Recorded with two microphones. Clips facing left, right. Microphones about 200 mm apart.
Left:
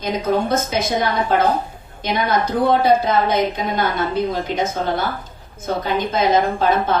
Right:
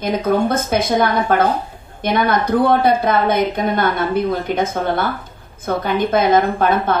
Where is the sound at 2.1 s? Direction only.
55° right (ahead or behind).